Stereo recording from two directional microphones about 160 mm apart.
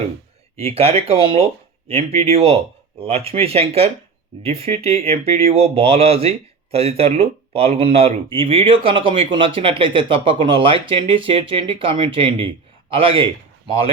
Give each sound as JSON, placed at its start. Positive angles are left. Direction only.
{"t": 0.5, "sound": "speech", "side_deg": -40}